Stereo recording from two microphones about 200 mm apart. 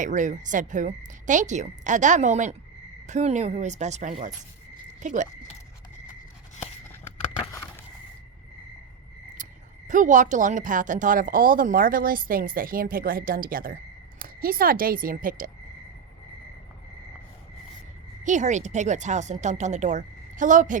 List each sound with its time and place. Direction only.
0.0 s speech: 40° right (ahead or behind)
9.4 s a woman's voice: 40° right (ahead or behind)
18.2 s speech: 35° right (ahead or behind)